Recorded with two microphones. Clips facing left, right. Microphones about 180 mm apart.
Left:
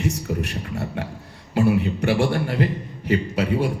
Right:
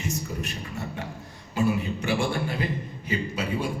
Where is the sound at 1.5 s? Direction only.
70° left (ahead or behind).